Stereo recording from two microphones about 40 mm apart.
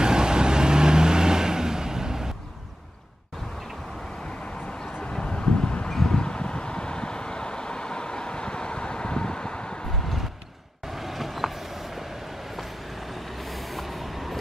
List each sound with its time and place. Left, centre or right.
0.0 s vehicle: centre
5.2 s wind: centre
5.9 s a sound: centre
10.9 s vehicle: centre
13.1 s vehicle: centre